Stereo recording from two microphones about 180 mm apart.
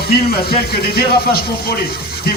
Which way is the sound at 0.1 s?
60° left (ahead or behind).